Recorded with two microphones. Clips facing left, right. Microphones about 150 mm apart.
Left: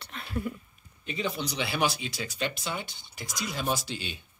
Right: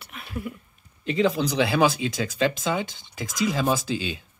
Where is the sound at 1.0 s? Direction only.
90° right.